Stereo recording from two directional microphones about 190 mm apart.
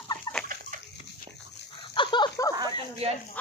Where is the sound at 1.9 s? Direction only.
25° left (ahead or behind).